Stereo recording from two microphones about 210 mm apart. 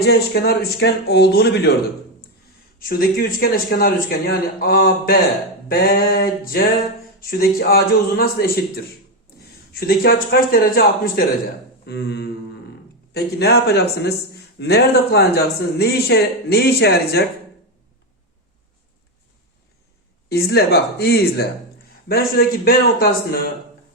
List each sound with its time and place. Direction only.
0.0 s speech: 50° left (ahead or behind)
2.7 s speech: 45° left (ahead or behind)
20.3 s speech: 50° left (ahead or behind)